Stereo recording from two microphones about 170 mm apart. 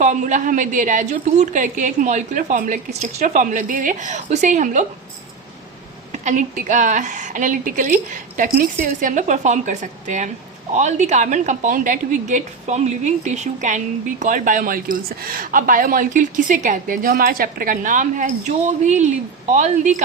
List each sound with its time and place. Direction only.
0.0 s a woman's voice: 45° right (ahead or behind)
6.1 s a woman's voice: 45° right (ahead or behind)